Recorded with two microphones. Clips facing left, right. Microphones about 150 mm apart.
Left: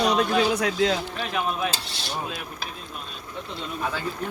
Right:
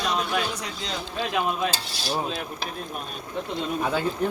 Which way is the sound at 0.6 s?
60° left (ahead or behind).